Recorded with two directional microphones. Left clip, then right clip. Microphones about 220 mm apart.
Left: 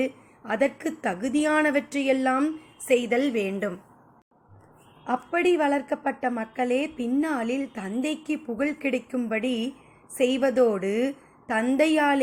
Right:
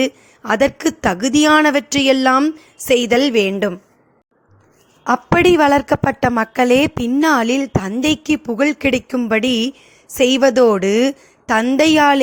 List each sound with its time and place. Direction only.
0.0 s a woman's voice: 45° right (ahead or behind)
5.0 s a woman's voice: 45° right (ahead or behind)